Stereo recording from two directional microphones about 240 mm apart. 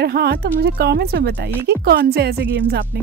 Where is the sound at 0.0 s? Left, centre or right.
Right.